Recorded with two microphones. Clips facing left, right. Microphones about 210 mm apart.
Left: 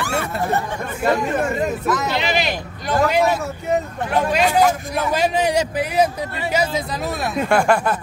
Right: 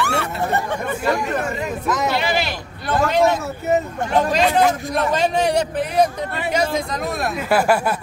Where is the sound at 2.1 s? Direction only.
20° left (ahead or behind).